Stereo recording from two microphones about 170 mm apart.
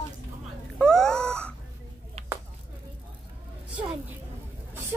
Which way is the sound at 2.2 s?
35° right (ahead or behind).